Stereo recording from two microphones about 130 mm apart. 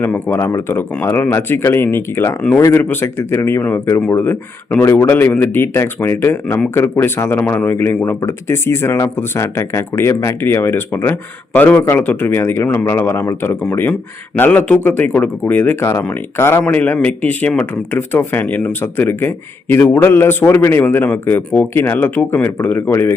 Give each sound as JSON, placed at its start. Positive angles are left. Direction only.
{"t": 0.0, "sound": "speech", "side_deg": 15}